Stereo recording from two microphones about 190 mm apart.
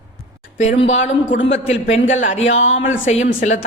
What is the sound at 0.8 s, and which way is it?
A woman's voice, 40° left (ahead or behind).